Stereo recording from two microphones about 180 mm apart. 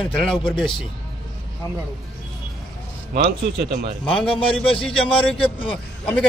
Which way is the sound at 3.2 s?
65° right (ahead or behind).